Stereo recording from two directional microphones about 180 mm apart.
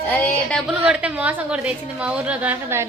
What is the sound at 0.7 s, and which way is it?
A woman's voice, 5° right (ahead or behind).